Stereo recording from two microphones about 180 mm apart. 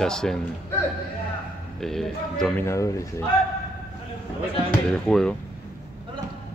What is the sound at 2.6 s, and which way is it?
Speech, 15° left (ahead or behind).